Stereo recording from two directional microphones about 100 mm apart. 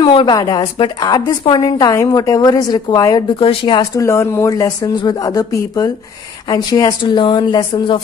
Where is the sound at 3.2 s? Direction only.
55° left (ahead or behind).